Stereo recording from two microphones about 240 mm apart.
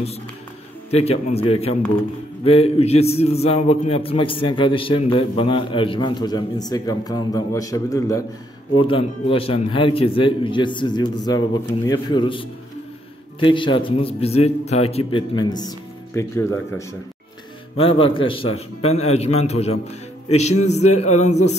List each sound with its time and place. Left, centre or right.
0.8 s a man's voice: left
17.7 s a man's voice: left